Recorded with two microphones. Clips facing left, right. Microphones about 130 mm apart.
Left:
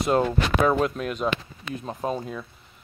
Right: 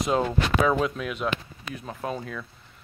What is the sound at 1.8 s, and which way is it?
Speech, 20° left (ahead or behind).